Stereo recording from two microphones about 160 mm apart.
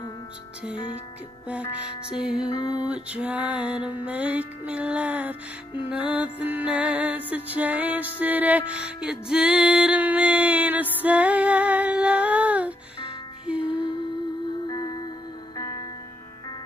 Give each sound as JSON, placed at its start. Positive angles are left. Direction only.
{"t": 1.5, "sound": "music", "side_deg": -5}
{"t": 2.5, "sound": "music", "side_deg": 30}
{"t": 2.8, "sound": "music", "side_deg": -5}
{"t": 11.0, "sound": "female singing", "side_deg": -10}
{"t": 13.5, "sound": "music", "side_deg": -5}
{"t": 14.7, "sound": "music", "side_deg": 25}